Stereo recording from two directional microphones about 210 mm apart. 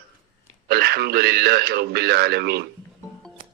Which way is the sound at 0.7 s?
50° right (ahead or behind).